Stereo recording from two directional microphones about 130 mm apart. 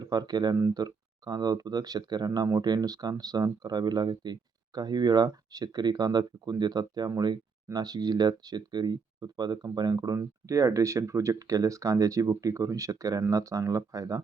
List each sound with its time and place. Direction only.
0.0 s speech: 30° right (ahead or behind)